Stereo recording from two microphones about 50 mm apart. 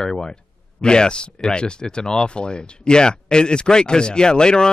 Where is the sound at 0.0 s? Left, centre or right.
Centre.